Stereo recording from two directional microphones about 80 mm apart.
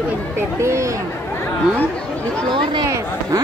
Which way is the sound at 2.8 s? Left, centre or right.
Right.